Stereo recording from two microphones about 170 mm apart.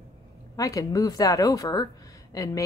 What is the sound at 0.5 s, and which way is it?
Speech, 20° left (ahead or behind).